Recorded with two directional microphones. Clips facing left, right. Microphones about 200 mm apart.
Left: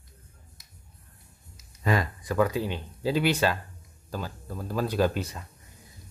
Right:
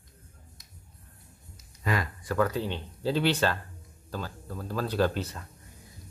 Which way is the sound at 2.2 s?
10° left (ahead or behind).